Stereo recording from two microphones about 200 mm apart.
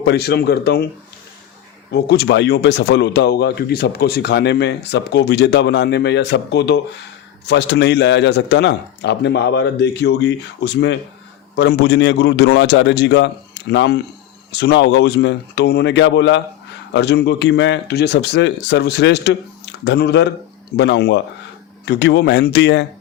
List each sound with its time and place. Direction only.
0.0 s speech: 55° left (ahead or behind)
1.9 s speech: 55° left (ahead or behind)